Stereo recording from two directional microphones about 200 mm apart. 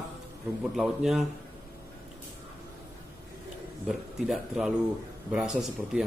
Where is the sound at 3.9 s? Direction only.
Centre (ahead or behind).